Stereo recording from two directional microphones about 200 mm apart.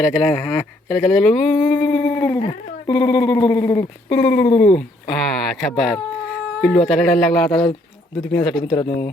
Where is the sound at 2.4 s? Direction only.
20° left (ahead or behind).